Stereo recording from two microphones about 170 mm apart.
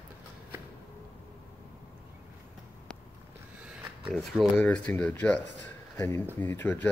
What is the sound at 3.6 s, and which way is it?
Speech, 5° right (ahead or behind).